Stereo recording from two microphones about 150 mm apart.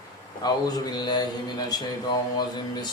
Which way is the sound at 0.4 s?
25° left (ahead or behind).